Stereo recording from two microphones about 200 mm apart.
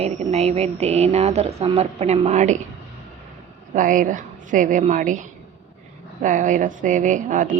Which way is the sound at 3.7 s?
40° right (ahead or behind).